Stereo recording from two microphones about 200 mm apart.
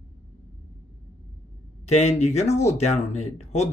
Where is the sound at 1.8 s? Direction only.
35° left (ahead or behind).